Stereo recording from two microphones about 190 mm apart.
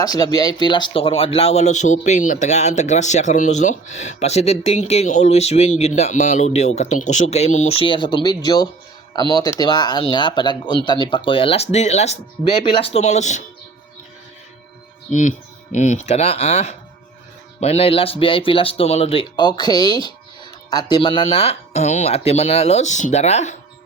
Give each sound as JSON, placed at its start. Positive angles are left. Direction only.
{"t": 0.0, "sound": "speech", "side_deg": 20}
{"t": 15.1, "sound": "speech", "side_deg": 40}